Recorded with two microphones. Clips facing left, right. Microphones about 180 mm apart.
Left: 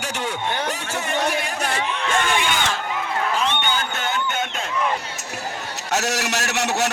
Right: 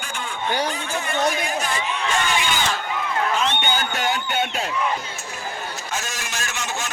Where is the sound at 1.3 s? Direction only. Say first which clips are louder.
Even; 65° left (ahead or behind).